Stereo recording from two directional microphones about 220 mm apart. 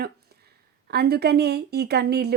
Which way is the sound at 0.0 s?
45° right (ahead or behind).